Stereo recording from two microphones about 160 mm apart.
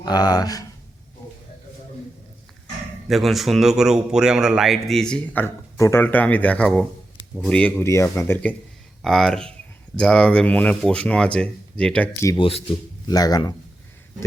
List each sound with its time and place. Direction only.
0.0 s speech: 25° left (ahead or behind)
3.1 s a man's voice: centre (ahead or behind)
12.4 s speech: 35° left (ahead or behind)
13.1 s speech: 25° left (ahead or behind)